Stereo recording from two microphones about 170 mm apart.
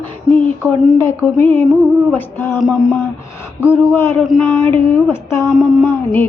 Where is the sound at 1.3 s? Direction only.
15° left (ahead or behind).